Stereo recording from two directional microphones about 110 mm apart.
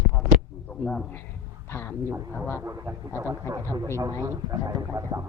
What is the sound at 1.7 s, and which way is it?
Speech, 20° left (ahead or behind).